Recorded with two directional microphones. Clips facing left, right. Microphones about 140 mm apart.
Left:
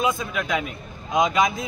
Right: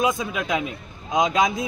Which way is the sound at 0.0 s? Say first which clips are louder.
Right 1 dB; 15° right (ahead or behind).